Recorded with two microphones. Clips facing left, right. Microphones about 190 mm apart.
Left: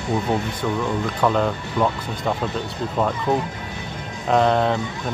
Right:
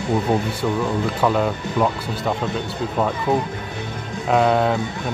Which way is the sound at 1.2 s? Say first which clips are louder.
Even; 5° right (ahead or behind).